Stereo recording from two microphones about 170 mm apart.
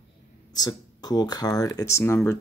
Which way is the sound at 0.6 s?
25° left (ahead or behind).